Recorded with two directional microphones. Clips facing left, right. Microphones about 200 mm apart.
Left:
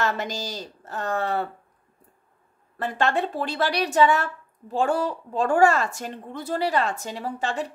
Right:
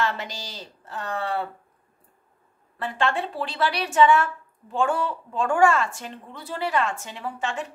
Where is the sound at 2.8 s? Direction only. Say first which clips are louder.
Left 2 dB; 40° left (ahead or behind).